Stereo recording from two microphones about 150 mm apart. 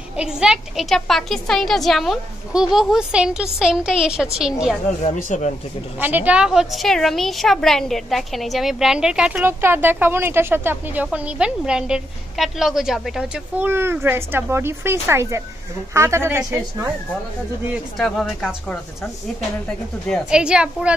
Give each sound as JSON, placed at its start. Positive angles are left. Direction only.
{"t": 0.2, "sound": "a woman's voice", "side_deg": -5}
{"t": 5.0, "sound": "speech", "side_deg": 50}
{"t": 5.9, "sound": "a woman's voice", "side_deg": -10}
{"t": 17.9, "sound": "a woman's voice", "side_deg": 5}
{"t": 20.1, "sound": "a woman's voice", "side_deg": 0}